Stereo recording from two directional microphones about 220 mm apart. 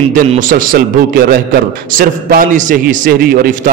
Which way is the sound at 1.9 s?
40° right (ahead or behind).